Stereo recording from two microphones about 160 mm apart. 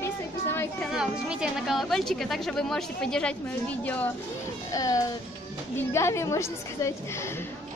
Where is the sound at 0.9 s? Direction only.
5° right (ahead or behind).